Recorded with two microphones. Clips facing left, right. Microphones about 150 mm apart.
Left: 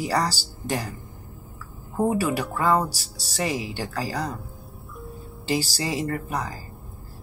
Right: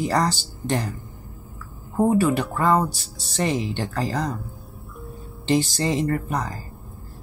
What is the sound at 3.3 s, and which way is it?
Speech, 10° left (ahead or behind).